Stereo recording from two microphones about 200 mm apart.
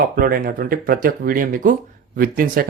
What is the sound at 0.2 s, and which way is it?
Speech, 50° right (ahead or behind).